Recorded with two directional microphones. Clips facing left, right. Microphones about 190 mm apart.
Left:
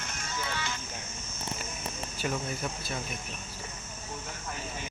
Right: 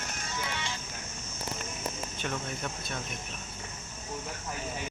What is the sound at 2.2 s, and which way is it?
Speech, 5° left (ahead or behind).